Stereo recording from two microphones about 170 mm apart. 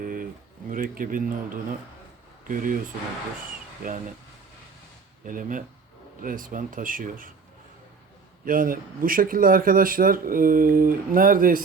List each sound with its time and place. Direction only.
0.0 s a sound: 55° right (ahead or behind)
0.7 s speech: 55° right (ahead or behind)
2.5 s speech: 55° right (ahead or behind)
5.2 s speech: 55° right (ahead or behind)
8.4 s speech: 55° right (ahead or behind)